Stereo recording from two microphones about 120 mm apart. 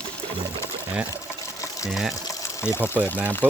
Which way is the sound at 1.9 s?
5° right (ahead or behind).